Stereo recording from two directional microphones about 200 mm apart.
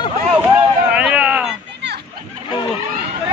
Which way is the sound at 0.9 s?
5° right (ahead or behind).